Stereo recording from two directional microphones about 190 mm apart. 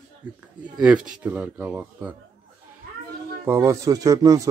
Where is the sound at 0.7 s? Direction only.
5° right (ahead or behind).